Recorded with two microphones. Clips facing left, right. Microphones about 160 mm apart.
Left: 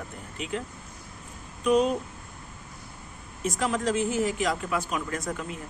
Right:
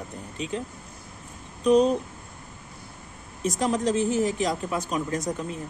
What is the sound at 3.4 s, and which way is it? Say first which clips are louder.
Speech: right 3 dB; 35° right (ahead or behind).